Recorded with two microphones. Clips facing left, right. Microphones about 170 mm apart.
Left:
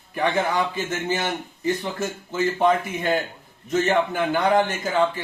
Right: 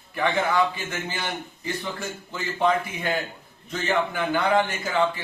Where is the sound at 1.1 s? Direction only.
45° left (ahead or behind).